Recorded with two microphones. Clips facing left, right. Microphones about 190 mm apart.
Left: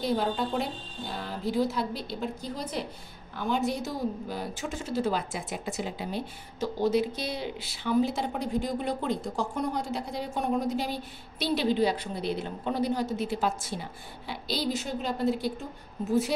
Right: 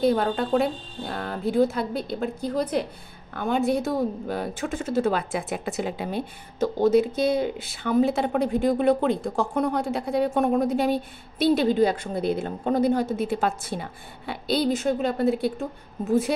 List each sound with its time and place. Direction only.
0.0 s speech: 55° right (ahead or behind)